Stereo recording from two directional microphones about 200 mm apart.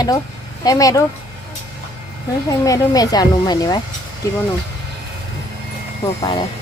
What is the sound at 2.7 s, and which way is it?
Speech, 20° left (ahead or behind).